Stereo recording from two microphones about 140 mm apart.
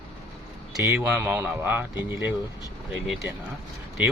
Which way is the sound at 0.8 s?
20° right (ahead or behind).